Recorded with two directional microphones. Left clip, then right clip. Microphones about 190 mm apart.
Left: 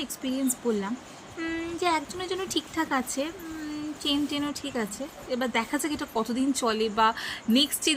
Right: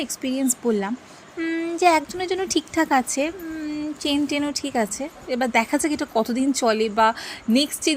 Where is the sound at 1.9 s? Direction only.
35° right (ahead or behind).